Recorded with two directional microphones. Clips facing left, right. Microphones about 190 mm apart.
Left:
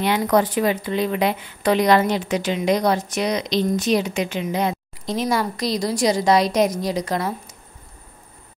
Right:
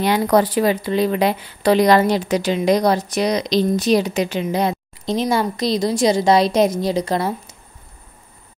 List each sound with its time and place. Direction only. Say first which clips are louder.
0.0 s speech: right 3 dB; 35° right (ahead or behind)